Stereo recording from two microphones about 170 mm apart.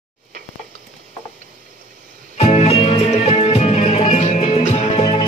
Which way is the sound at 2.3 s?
40° left (ahead or behind).